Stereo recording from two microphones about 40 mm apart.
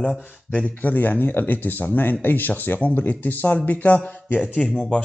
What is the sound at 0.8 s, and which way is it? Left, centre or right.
A man's voice, left.